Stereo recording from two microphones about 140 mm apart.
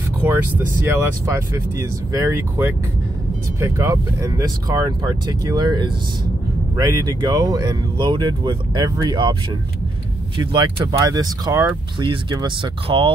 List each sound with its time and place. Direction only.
0.2 s speech: 15° right (ahead or behind); by 13.1 s 40° right (ahead or behind)